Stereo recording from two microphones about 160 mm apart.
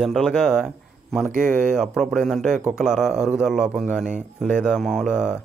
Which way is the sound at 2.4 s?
50° right (ahead or behind).